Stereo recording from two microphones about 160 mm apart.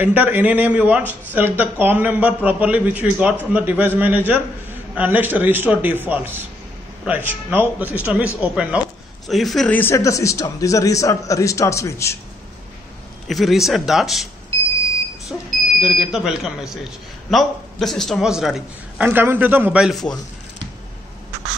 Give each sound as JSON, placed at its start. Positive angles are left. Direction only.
{"t": 0.0, "sound": "a man's voice", "side_deg": -10}
{"t": 13.3, "sound": "a man's voice", "side_deg": 0}
{"t": 15.3, "sound": "smoke detector", "side_deg": 5}
{"t": 15.8, "sound": "a man's voice", "side_deg": 0}